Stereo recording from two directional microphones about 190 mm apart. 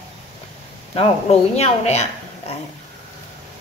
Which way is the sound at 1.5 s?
35° left (ahead or behind).